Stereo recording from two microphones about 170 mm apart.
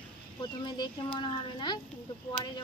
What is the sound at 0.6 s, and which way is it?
Speech, 30° left (ahead or behind).